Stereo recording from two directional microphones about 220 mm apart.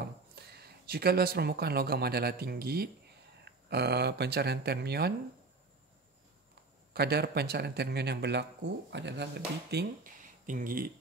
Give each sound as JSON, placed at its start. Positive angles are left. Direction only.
{"t": 0.5, "sound": "speech", "side_deg": -45}
{"t": 6.9, "sound": "speech", "side_deg": -45}